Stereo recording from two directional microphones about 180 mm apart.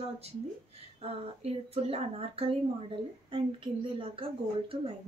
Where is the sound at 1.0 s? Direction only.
35° right (ahead or behind).